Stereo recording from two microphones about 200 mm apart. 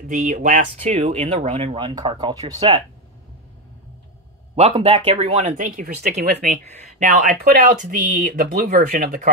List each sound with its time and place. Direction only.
0.1 s speech: 40° right (ahead or behind)
4.6 s speech: 30° right (ahead or behind); by 9.3 s 45° right (ahead or behind)